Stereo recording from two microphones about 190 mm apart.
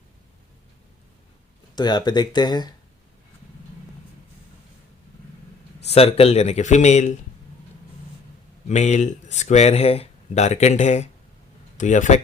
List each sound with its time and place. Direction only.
1.7 s speech: 20° left (ahead or behind)
5.9 s speech: 30° left (ahead or behind)
8.6 s speech: 35° left (ahead or behind)